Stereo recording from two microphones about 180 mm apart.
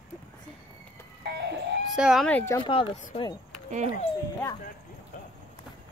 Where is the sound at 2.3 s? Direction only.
10° left (ahead or behind).